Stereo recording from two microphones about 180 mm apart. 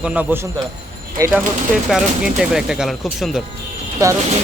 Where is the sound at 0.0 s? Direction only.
5° right (ahead or behind).